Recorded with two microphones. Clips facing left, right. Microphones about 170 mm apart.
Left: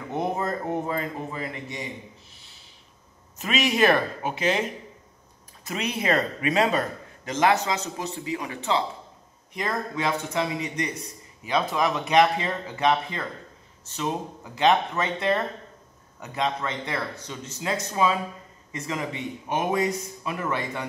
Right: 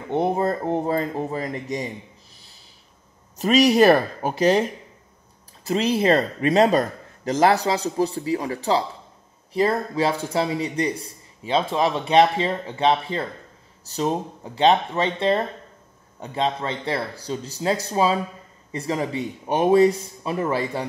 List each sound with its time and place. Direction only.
0.1 s speech: 30° right (ahead or behind)
2.3 s a sound: 40° right (ahead or behind)
3.3 s a man's voice: 40° right (ahead or behind)